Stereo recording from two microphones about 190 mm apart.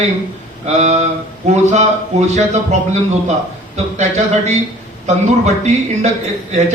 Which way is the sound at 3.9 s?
35° right (ahead or behind).